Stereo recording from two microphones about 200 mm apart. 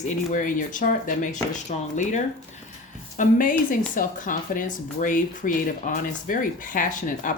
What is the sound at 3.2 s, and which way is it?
Speech, 40° left (ahead or behind).